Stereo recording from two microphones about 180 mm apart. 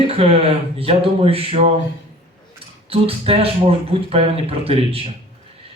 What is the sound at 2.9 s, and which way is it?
Speech, 30° right (ahead or behind).